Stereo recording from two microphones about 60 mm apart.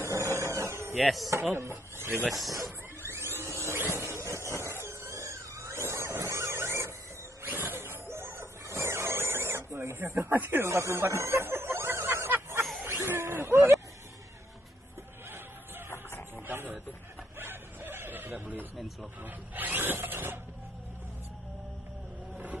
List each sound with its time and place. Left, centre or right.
0.0 s a sound: right
1.0 s speech: centre
1.6 s speech: right
2.2 s speech: centre
3.0 s a sound: right
7.4 s vehicle: right
10.1 s speech: right
10.6 s a sound: right
15.9 s printer: left
16.4 s a sound: right
17.4 s bow-wow: right
19.2 s speech: right